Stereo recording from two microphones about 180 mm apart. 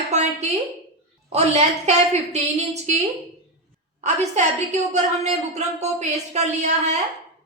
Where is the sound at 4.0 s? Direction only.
40° right (ahead or behind).